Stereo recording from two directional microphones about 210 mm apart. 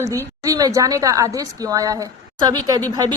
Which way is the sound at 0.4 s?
15° right (ahead or behind).